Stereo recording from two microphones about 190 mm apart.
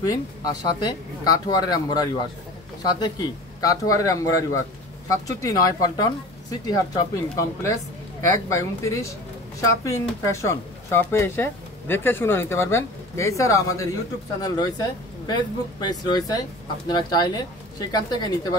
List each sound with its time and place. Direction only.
0.0 s speech: 20° left (ahead or behind)
10.2 s speech: 15° left (ahead or behind)